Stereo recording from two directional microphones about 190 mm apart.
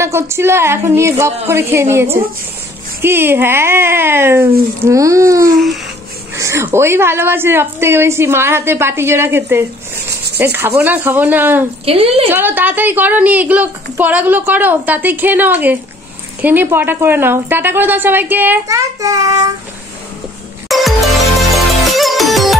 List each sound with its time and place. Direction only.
0.0 s a woman's voice: 15° right (ahead or behind)
11.8 s a woman's voice: 30° right (ahead or behind)
12.3 s a woman's voice: 10° right (ahead or behind)
20.6 s music: centre (ahead or behind)